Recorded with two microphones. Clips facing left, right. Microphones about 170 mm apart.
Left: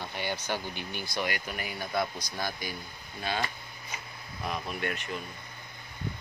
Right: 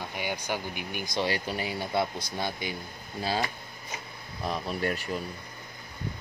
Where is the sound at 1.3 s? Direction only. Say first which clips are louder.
Right 5 dB; 30° right (ahead or behind).